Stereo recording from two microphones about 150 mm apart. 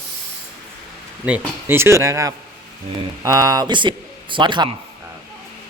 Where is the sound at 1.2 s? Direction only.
10° right (ahead or behind); by 4.7 s 30° right (ahead or behind).